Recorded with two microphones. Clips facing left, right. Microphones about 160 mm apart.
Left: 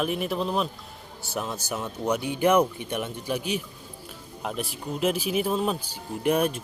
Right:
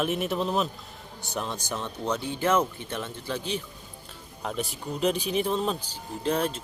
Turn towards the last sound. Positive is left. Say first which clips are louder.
# left 3 dB
turn(degrees=15)  # may be behind; listen again after turning